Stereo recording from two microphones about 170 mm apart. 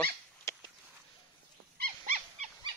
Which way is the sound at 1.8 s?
50° right (ahead or behind).